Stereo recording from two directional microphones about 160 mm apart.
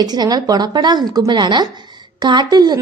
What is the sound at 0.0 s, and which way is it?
A woman's voice, 25° right (ahead or behind).